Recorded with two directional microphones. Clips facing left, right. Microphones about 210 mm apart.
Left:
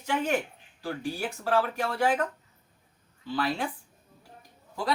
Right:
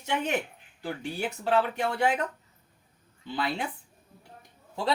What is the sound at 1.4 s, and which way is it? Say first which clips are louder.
Speech: right 1 dB; 20° right (ahead or behind).